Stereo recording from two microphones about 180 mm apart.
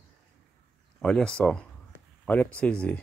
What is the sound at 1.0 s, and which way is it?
Speech, 5° left (ahead or behind).